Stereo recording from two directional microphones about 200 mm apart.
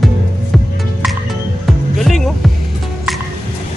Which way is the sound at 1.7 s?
Centre (ahead or behind).